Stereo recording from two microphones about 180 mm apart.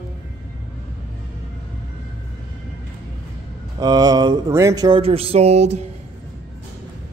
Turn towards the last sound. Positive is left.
turn(degrees=-40)  # may be behind; listen again after turning